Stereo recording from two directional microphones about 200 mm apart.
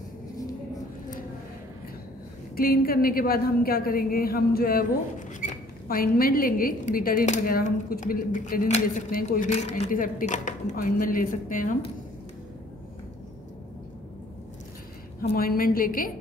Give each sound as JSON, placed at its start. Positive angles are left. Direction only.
{"t": 2.5, "sound": "a woman's voice", "side_deg": 50}
{"t": 15.3, "sound": "a woman's voice", "side_deg": 45}